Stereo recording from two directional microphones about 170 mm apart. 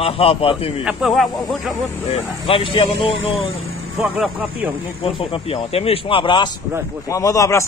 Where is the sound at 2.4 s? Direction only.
30° left (ahead or behind).